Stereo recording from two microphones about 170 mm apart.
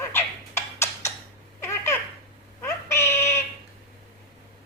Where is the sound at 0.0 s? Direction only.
15° left (ahead or behind).